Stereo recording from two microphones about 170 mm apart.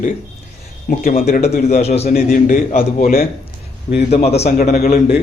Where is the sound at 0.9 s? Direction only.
55° left (ahead or behind).